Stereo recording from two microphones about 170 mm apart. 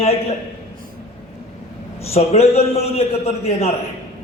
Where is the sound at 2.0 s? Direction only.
40° left (ahead or behind).